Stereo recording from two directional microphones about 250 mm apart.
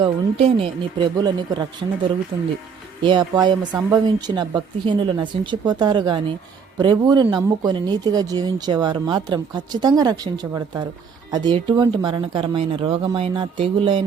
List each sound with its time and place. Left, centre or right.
0.0 s speech: right